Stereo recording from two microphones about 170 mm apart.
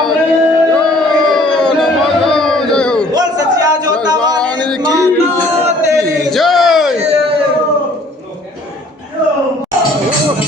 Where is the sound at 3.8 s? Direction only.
20° right (ahead or behind).